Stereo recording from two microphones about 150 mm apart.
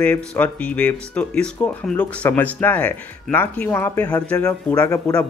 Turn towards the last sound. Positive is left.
turn(degrees=25)  # may be behind; listen again after turning